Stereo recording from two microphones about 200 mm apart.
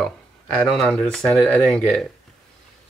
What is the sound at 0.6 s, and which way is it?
Speech, centre (ahead or behind).